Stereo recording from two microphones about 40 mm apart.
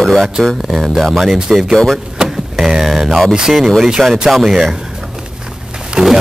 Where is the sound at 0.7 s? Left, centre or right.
Centre.